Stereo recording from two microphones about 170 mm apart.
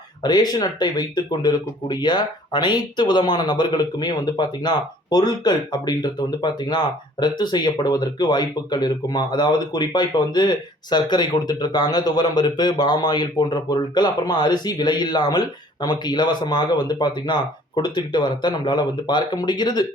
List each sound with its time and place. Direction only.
0.2 s speech: 25° left (ahead or behind)